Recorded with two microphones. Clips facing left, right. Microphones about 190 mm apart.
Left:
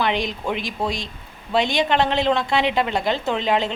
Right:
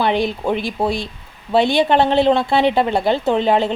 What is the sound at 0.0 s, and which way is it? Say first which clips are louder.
A woman's voice: right 5 dB; 35° right (ahead or behind).